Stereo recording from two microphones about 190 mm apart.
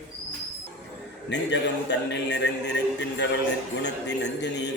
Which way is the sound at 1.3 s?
65° left (ahead or behind).